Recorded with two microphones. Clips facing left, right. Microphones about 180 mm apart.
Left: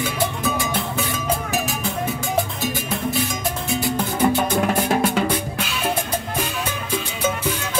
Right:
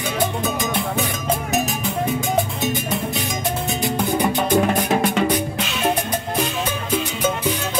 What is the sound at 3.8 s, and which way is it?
Music, 15° right (ahead or behind).